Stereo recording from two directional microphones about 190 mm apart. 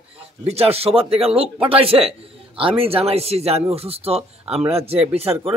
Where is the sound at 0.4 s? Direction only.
35° right (ahead or behind).